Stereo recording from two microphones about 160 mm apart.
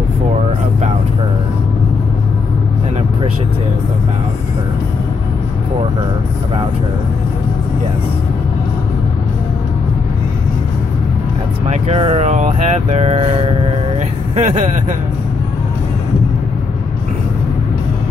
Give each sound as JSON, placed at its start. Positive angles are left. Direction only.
{"t": 11.7, "sound": "speech", "side_deg": -40}